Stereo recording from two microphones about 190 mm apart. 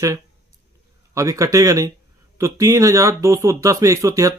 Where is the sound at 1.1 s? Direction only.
15° right (ahead or behind).